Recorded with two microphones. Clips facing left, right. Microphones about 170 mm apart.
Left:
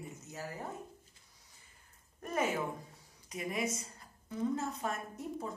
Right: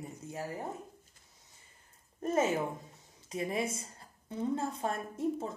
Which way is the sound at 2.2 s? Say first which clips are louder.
Right 4 dB; 25° right (ahead or behind).